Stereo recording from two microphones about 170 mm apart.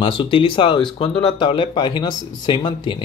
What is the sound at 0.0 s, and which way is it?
Speech, 30° left (ahead or behind).